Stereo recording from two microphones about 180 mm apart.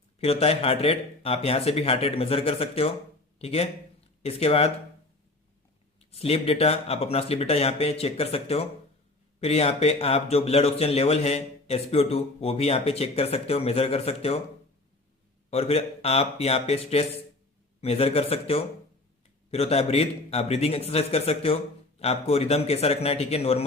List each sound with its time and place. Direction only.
0.2 s speech: 35° left (ahead or behind)
6.0 s speech: 35° left (ahead or behind)
15.4 s speech: 35° left (ahead or behind)